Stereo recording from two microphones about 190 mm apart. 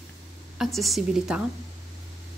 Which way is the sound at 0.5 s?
Centre (ahead or behind).